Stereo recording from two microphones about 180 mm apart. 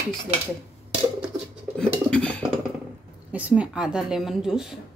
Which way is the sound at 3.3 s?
5° right (ahead or behind).